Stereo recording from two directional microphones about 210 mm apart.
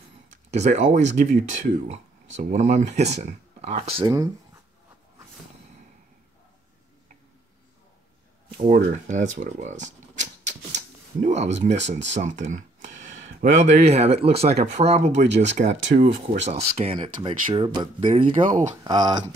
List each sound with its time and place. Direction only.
0.5 s speech: 35° right (ahead or behind)
8.5 s speech: 35° right (ahead or behind)
10.4 s a sound: 35° right (ahead or behind)
11.7 s speech: 55° right (ahead or behind)
12.1 s speech: 35° right (ahead or behind)
18.4 s speech: 40° right (ahead or behind)
18.9 s speech: 20° right (ahead or behind)